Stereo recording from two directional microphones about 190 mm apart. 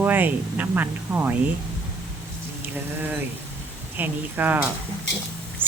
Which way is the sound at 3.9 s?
10° right (ahead or behind).